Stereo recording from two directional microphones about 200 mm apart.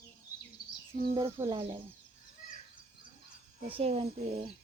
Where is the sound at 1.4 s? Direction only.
25° right (ahead or behind).